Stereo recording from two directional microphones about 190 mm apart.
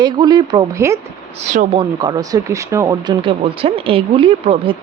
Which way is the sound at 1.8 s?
20° right (ahead or behind).